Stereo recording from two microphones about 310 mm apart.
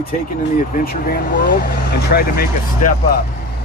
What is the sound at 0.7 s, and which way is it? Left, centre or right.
Speech, left.